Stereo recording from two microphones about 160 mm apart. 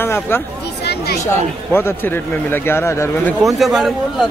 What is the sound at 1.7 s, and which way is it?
A man's voice, 15° left (ahead or behind).